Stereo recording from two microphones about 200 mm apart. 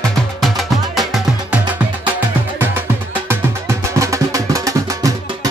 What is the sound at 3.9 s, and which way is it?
Music, 15° right (ahead or behind).